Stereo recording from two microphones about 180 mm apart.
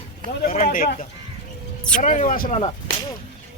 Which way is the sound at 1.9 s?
45° left (ahead or behind).